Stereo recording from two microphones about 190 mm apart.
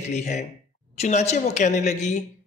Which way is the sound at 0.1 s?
35° left (ahead or behind).